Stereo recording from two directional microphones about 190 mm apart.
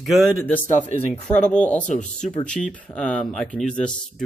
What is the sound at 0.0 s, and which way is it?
Speech, centre (ahead or behind).